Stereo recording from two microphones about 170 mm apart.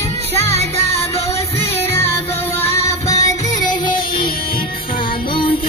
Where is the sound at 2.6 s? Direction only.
20° left (ahead or behind).